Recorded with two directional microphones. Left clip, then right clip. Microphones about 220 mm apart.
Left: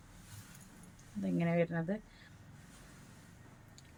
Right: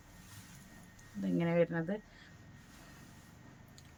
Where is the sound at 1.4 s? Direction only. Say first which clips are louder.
Right 3 dB; 20° right (ahead or behind).